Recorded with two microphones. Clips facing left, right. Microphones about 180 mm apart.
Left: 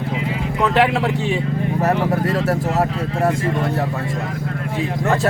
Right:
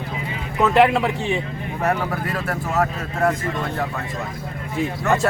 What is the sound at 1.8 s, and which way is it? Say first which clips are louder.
Speech: left 3 dB; 35° left (ahead or behind).